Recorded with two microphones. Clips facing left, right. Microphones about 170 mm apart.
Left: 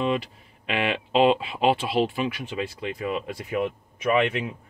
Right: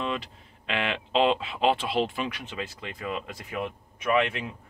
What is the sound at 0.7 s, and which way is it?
Speech, 10° left (ahead or behind).